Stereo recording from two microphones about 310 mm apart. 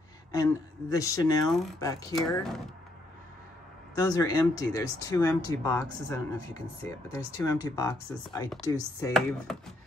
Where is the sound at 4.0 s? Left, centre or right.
Centre.